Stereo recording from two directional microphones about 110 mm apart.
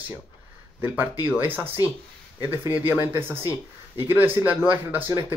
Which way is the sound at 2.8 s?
20° right (ahead or behind).